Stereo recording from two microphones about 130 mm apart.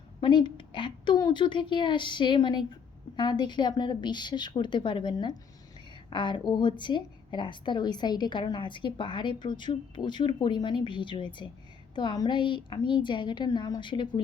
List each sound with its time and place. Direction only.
0.2 s a woman's voice: 35° left (ahead or behind)